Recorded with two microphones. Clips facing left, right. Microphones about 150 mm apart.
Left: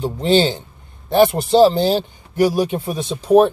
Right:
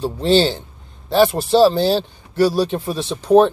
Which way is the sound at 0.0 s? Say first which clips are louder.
Even; 15° left (ahead or behind).